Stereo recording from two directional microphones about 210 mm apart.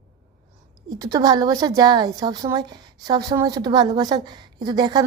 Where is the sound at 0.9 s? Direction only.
20° right (ahead or behind).